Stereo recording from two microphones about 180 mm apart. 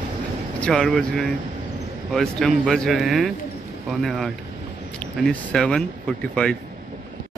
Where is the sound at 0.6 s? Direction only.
5° left (ahead or behind).